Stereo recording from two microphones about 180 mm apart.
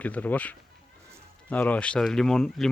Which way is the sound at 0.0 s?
10° left (ahead or behind).